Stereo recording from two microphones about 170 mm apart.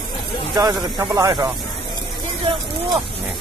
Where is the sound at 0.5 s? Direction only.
20° right (ahead or behind).